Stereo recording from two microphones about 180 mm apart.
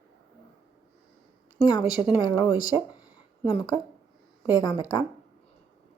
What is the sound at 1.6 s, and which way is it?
Speech, 25° left (ahead or behind).